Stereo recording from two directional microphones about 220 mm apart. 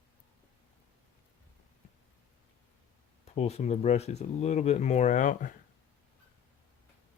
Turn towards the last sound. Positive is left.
turn(degrees=35)  # may be behind; listen again after turning